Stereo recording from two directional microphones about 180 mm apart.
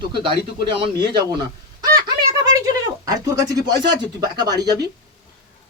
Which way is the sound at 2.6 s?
20° right (ahead or behind).